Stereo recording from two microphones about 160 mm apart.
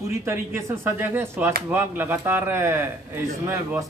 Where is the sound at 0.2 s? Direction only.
15° right (ahead or behind).